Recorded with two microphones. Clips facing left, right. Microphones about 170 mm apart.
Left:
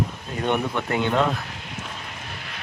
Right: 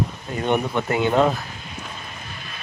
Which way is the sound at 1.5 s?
75° left (ahead or behind).